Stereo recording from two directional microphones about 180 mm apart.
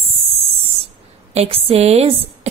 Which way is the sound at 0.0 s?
35° right (ahead or behind).